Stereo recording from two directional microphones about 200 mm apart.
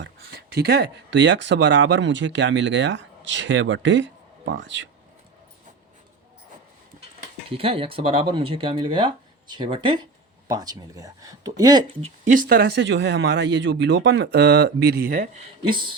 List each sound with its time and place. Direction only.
0.0 s speech: 50° right (ahead or behind)
7.5 s speech: 30° right (ahead or behind)
12.2 s speech: 40° right (ahead or behind)
15.6 s speech: 25° right (ahead or behind)